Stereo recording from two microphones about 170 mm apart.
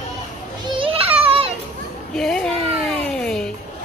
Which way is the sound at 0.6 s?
35° right (ahead or behind).